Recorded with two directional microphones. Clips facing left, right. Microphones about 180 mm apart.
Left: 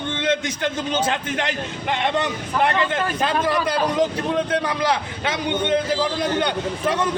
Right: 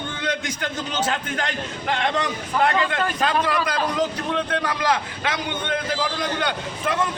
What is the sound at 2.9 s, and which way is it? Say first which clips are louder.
Speech: even; 30° left (ahead or behind).